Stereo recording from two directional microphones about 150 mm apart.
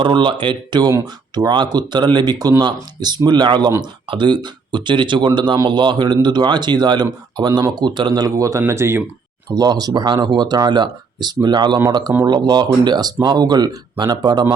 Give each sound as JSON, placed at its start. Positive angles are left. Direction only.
{"t": 0.0, "sound": "speech", "side_deg": -30}